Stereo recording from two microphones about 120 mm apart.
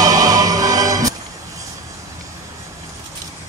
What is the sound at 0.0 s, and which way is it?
Music, 30° right (ahead or behind).